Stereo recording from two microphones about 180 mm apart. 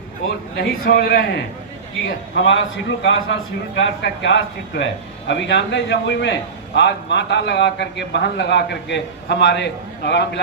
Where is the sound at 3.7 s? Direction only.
85° left.